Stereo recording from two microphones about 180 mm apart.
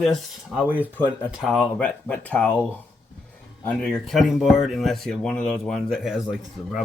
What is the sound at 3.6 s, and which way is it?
Speech, 5° left (ahead or behind).